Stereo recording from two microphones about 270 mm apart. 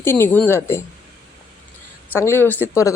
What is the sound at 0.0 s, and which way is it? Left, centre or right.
Speech, centre.